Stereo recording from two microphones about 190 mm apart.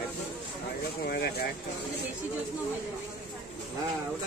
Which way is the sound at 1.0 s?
55° left (ahead or behind).